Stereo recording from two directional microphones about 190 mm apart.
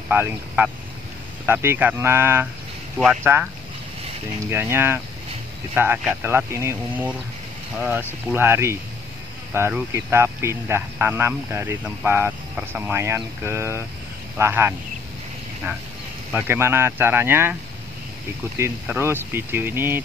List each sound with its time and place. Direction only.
0.1 s speech: 10° right (ahead or behind)
4.5 s speech: 10° right (ahead or behind)
16.3 s speech: 10° right (ahead or behind)
18.6 s speech: 10° right (ahead or behind)